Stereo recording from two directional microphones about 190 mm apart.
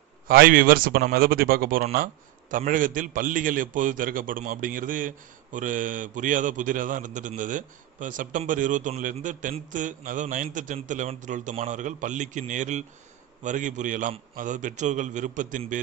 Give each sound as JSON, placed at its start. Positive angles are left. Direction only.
{"t": 0.3, "sound": "a man's voice", "side_deg": -50}